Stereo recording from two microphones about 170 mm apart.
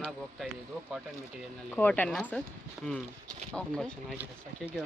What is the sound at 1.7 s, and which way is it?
Speech, 10° left (ahead or behind).